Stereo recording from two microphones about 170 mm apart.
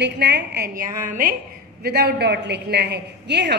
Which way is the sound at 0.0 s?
75° right (ahead or behind).